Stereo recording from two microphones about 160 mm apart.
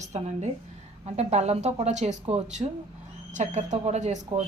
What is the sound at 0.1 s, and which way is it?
A woman's voice, 40° right (ahead or behind).